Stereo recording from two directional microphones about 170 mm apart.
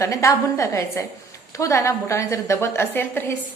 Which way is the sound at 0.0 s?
20° left (ahead or behind).